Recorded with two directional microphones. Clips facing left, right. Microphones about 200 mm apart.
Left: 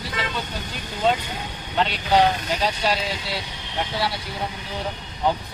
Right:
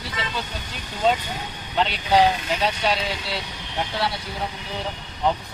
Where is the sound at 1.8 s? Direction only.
Centre (ahead or behind).